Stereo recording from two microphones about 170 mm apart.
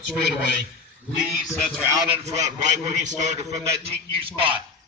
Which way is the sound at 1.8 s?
15° right (ahead or behind).